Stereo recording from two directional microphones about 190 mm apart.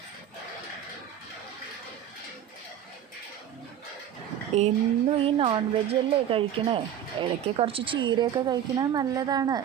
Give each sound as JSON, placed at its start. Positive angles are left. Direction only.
{"t": 4.5, "sound": "speech", "side_deg": -35}